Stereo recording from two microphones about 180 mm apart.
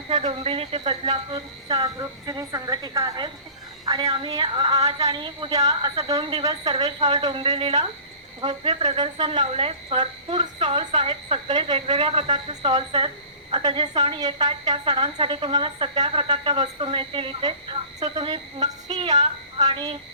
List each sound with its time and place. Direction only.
0.1 s a woman's voice: 30° right (ahead or behind)
6.1 s speech: 35° right (ahead or behind)
6.4 s a woman's voice: 20° right (ahead or behind)
18.9 s a woman's voice: 40° right (ahead or behind)